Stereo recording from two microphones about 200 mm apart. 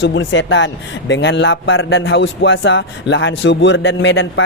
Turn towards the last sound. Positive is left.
turn(degrees=70)  # may be behind; listen again after turning